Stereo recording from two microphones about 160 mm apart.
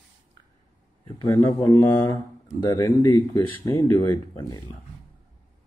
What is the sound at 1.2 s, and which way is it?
Speech, 15° left (ahead or behind).